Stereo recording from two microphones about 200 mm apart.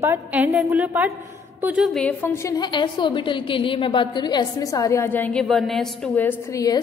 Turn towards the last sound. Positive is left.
turn(degrees=15)  # may be behind; listen again after turning